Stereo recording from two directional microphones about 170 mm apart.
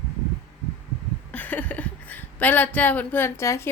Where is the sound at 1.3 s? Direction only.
10° left (ahead or behind).